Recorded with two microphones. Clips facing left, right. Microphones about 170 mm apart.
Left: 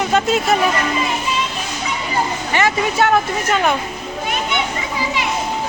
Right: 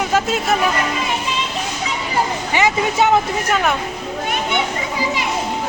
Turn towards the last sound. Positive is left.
turn(degrees=0)  # may be behind; listen again after turning